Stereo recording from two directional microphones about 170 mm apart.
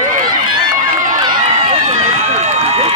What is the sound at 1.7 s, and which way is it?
Run, 40° right (ahead or behind).